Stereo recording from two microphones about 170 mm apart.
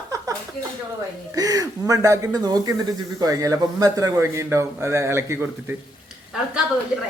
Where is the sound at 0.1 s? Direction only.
20° right (ahead or behind).